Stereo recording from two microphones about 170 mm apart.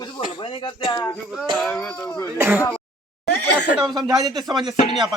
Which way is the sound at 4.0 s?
25° right (ahead or behind).